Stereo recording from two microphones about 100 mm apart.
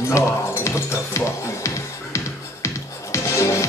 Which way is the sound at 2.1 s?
30° left (ahead or behind).